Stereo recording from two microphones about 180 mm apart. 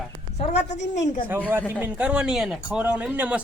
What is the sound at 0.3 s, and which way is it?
Speech, 40° left (ahead or behind).